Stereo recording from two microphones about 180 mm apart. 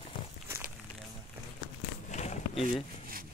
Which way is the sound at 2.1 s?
40° left (ahead or behind).